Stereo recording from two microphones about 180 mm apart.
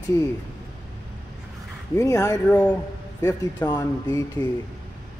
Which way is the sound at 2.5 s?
5° left (ahead or behind).